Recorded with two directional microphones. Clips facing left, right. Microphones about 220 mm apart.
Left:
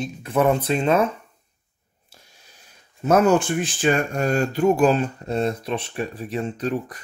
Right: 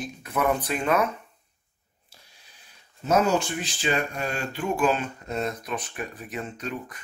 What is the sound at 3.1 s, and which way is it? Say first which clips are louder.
Speech: left 5 dB; 55° left (ahead or behind).